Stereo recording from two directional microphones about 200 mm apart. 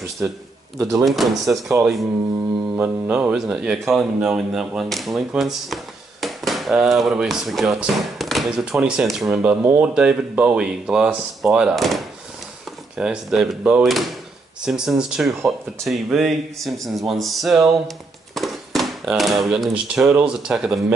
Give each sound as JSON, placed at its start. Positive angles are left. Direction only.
{"t": 0.2, "sound": "speech", "side_deg": -10}
{"t": 1.0, "sound": "speech", "side_deg": 0}
{"t": 2.7, "sound": "speech", "side_deg": -10}
{"t": 17.8, "sound": "a sound", "side_deg": 0}
{"t": 20.1, "sound": "speech", "side_deg": -5}